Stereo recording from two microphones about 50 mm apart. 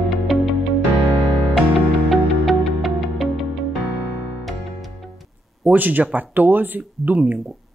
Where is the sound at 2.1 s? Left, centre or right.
Centre.